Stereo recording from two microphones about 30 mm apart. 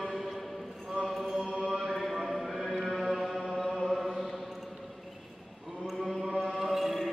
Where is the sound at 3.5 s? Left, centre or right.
Centre.